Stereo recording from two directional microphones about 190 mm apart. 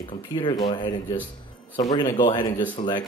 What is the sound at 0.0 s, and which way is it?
Speech, 25° left (ahead or behind).